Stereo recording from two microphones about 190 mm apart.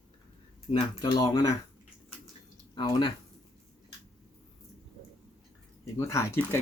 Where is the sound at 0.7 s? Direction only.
20° left (ahead or behind).